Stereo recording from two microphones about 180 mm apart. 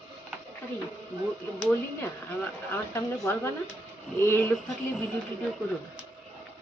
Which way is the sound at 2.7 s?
15° left (ahead or behind).